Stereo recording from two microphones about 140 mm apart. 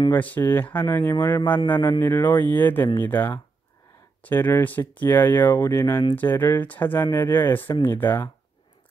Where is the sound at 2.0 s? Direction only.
15° left (ahead or behind).